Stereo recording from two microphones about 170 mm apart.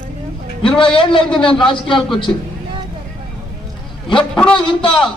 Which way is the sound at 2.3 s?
15° left (ahead or behind).